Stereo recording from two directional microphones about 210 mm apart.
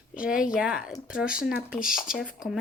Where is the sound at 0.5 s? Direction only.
5° right (ahead or behind).